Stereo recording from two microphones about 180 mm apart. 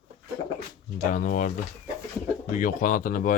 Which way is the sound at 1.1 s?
45° left (ahead or behind).